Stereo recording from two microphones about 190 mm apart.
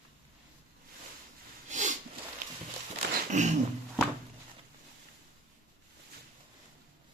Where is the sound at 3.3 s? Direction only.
40° right (ahead or behind).